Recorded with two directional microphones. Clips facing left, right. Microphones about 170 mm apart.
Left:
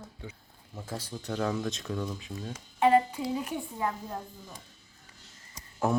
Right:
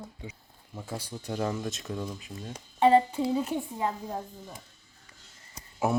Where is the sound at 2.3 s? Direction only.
Centre (ahead or behind).